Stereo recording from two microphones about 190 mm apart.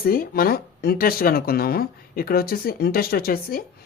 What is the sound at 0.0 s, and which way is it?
Speech, 50° left (ahead or behind).